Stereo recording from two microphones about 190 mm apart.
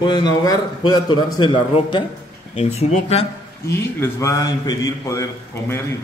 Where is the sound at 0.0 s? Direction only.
25° left (ahead or behind).